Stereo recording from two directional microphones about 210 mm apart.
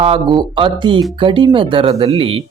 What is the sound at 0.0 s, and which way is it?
Speech, 25° right (ahead or behind).